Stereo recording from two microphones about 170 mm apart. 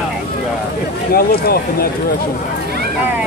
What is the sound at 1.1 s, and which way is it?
Speech, 65° left (ahead or behind).